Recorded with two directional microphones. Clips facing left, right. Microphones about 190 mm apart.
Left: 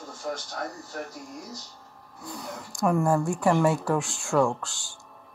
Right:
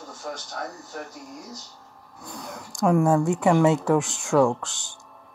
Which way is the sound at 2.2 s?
20° right (ahead or behind).